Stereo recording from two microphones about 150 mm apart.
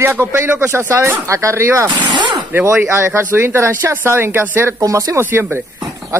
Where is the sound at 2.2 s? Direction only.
30° right (ahead or behind).